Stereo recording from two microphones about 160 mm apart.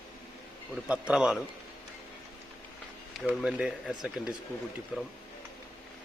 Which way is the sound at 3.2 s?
5° right (ahead or behind).